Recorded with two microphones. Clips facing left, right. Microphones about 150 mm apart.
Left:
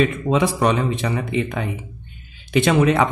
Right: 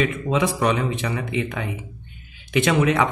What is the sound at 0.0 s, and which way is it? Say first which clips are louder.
Speech: left 3 dB; 35° left (ahead or behind).